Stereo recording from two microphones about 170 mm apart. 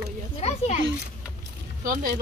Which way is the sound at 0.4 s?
40° left (ahead or behind).